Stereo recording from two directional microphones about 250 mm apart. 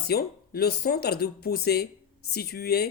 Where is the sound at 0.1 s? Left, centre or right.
Left.